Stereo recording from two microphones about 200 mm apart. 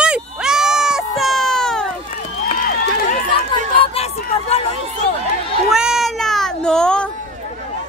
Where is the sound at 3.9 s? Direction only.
30° left (ahead or behind).